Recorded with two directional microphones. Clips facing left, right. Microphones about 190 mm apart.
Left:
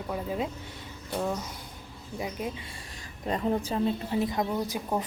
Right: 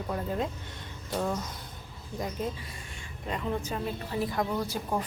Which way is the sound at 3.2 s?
35° left (ahead or behind).